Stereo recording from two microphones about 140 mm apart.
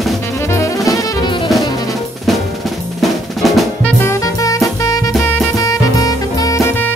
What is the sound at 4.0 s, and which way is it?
Music, 20° left (ahead or behind).